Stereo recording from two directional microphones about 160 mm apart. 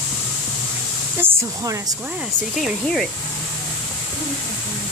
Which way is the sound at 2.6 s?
Centre (ahead or behind).